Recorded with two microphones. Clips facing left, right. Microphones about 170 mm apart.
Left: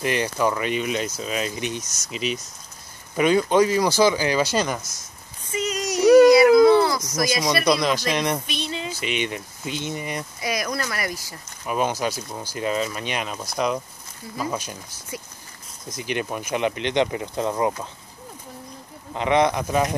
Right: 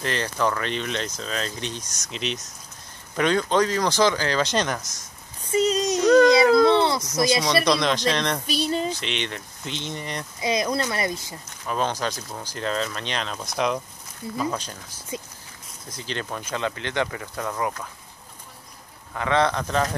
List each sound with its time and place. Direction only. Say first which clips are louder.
0.0 s speech: left 3 dB; 10° left (ahead or behind)
5.5 s a sound: right 5 dB; 30° right (ahead or behind)
6.0 s dog: left 4 dB; 10° left (ahead or behind)
6.6 s a sound: left 3 dB; 25° right (ahead or behind)
7.6 s speech: left 1 dB; 5° left (ahead or behind)
8.5 s a sound: right 5 dB; 40° right (ahead or behind)
9.0 s speech: left 4 dB; 10° left (ahead or behind)
10.4 s speech: right 4 dB; 25° right (ahead or behind)
11.6 s speech: left 2 dB; 10° left (ahead or behind)
16.0 s speech: left 4 dB; 15° left (ahead or behind)
19.1 s speech: left 3 dB; 15° left (ahead or behind)